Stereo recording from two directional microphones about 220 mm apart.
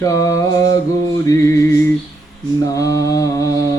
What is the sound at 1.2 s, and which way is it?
Music, 15° left (ahead or behind).